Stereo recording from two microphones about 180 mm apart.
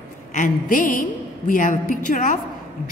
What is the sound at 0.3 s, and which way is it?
A woman's voice, 45° left (ahead or behind).